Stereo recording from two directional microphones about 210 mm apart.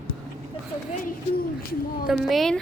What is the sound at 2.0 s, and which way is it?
Speech, centre (ahead or behind).